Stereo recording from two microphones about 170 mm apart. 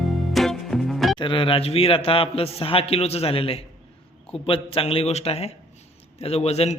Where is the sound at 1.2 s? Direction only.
30° left (ahead or behind).